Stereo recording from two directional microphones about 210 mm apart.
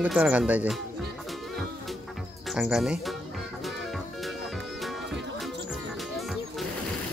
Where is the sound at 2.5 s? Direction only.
Centre (ahead or behind).